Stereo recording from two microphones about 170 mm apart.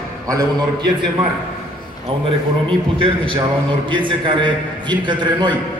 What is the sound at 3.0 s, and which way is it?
A man's voice, 30° right (ahead or behind).